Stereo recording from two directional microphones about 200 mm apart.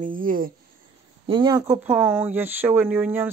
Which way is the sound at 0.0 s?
45° right (ahead or behind).